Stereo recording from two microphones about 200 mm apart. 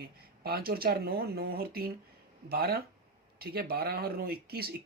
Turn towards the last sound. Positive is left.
turn(degrees=-50)  # may be behind; listen again after turning